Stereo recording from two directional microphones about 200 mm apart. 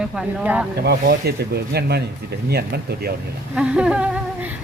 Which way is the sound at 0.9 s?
55° right (ahead or behind).